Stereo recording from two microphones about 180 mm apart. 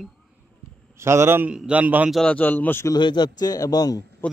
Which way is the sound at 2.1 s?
5° left (ahead or behind).